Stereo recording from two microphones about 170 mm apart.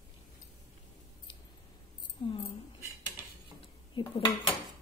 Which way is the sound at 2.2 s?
30° left (ahead or behind).